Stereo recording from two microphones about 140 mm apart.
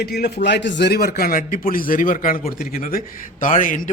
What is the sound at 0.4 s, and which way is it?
A man's voice, 90° left.